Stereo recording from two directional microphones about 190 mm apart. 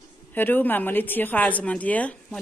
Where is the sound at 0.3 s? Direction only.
10° left (ahead or behind).